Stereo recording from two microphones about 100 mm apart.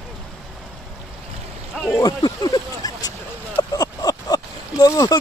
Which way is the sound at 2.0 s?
40° left (ahead or behind).